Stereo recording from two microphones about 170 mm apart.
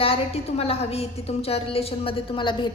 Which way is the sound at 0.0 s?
35° left (ahead or behind).